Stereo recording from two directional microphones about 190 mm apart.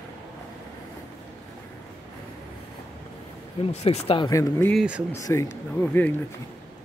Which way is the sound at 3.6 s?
30° left (ahead or behind).